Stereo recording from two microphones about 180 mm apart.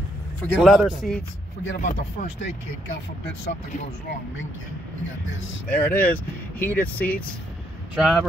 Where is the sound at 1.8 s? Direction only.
40° left (ahead or behind).